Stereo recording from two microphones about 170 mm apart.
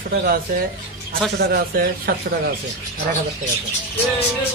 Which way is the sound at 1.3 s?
65° right (ahead or behind).